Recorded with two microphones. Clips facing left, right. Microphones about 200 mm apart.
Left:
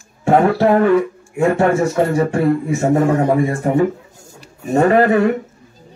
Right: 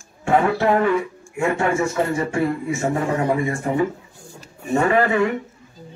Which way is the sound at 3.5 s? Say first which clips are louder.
Left 5 dB; 45° left (ahead or behind).